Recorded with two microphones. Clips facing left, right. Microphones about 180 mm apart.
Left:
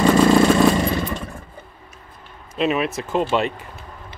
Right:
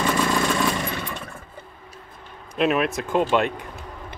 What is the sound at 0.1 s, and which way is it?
Vehicle, 40° left (ahead or behind).